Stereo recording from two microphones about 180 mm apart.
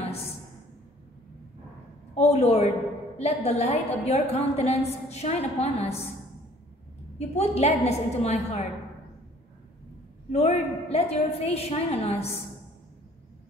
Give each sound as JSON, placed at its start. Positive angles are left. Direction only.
{"t": 2.1, "sound": "a woman's voice", "side_deg": 35}
{"t": 7.2, "sound": "a woman's voice", "side_deg": 35}
{"t": 10.3, "sound": "a woman's voice", "side_deg": 35}